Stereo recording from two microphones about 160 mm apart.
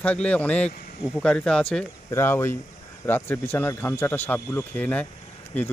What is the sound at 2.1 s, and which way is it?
Speech, 15° left (ahead or behind).